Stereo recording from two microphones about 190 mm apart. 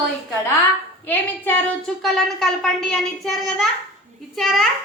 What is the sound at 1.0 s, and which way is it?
A woman's voice, 10° left (ahead or behind).